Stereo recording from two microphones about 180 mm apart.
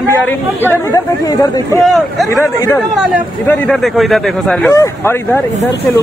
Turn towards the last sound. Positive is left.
turn(degrees=15)  # may be behind; listen again after turning